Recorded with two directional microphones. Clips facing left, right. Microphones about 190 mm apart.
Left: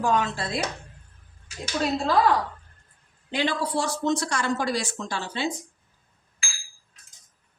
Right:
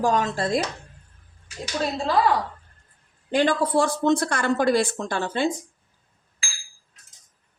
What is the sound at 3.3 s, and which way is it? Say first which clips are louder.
Speech: right 5 dB; 50° right (ahead or behind).